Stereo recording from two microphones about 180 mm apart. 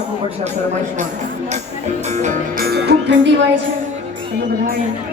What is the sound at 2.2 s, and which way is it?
Music, 40° right (ahead or behind).